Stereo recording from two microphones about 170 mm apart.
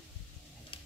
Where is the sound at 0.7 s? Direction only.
30° left (ahead or behind).